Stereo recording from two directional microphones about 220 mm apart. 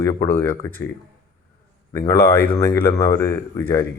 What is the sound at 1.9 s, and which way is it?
A man's voice, 15° left (ahead or behind).